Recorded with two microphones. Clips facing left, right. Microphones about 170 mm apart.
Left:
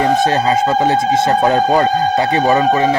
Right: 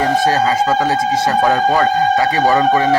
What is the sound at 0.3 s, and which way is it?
Speech, 25° left (ahead or behind).